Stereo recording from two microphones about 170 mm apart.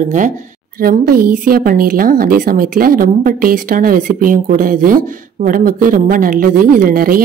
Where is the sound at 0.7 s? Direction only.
60° right (ahead or behind).